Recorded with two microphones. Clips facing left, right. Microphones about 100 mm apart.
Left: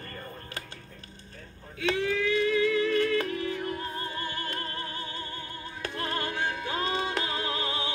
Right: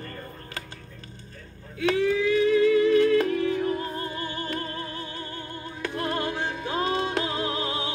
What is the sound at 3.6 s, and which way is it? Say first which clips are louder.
Music: right 6 dB; 10° right (ahead or behind).